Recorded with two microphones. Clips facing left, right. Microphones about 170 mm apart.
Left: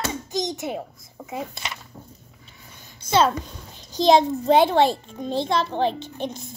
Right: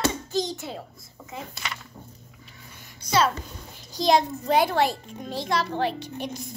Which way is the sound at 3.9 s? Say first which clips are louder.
Left 5 dB; 25° left (ahead or behind).